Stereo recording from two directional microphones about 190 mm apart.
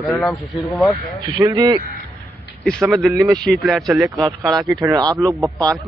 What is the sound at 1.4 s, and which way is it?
Speech, 20° right (ahead or behind).